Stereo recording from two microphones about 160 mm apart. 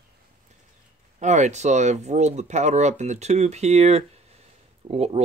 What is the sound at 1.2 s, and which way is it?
Speech, 45° right (ahead or behind).